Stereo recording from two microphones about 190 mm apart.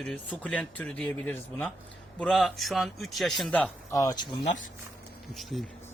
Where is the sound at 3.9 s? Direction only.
20° left (ahead or behind).